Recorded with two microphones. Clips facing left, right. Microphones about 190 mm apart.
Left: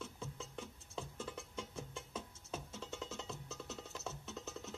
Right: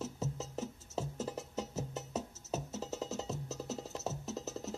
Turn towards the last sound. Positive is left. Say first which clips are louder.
# right 7 dB
turn(degrees=-40)  # may be behind; listen again after turning